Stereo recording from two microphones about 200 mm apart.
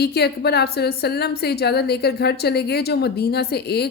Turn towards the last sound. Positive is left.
turn(degrees=55)  # may be behind; listen again after turning